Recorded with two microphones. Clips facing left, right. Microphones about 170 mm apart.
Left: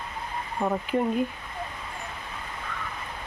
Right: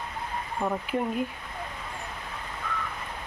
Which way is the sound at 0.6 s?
10° left (ahead or behind).